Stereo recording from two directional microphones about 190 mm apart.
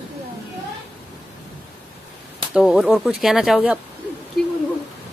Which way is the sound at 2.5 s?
5° right (ahead or behind).